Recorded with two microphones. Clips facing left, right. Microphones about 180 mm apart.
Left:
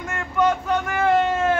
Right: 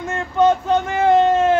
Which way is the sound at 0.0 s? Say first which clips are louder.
Right 5 dB; 25° right (ahead or behind).